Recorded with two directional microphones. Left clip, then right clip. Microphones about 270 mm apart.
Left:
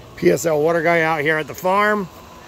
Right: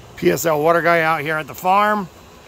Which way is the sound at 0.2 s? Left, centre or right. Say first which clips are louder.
Even; centre.